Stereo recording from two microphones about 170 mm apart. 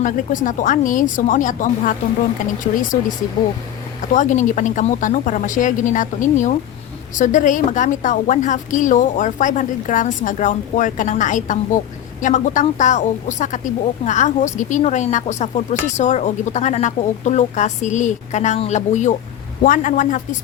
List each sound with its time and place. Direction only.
0.0 s a woman's voice: 50° left (ahead or behind)
4.1 s a woman's voice: 50° left (ahead or behind)